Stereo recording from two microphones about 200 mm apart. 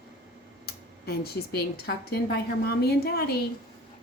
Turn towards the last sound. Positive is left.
turn(degrees=50)  # may be behind; listen again after turning